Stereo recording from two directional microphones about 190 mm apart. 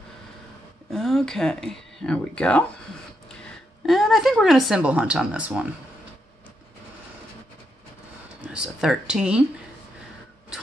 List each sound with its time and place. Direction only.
0.8 s speech: centre (ahead or behind)
3.8 s speech: centre (ahead or behind)
8.4 s speech: 5° right (ahead or behind)
10.5 s a sound: 5° right (ahead or behind)